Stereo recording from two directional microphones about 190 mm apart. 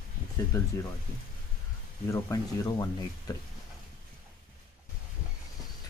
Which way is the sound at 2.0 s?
15° left (ahead or behind).